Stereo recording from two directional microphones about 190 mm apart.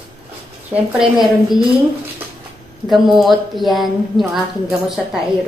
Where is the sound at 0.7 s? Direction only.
10° right (ahead or behind).